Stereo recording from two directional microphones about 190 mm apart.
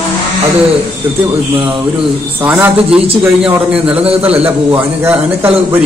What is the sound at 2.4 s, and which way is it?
A man's voice, 10° right (ahead or behind).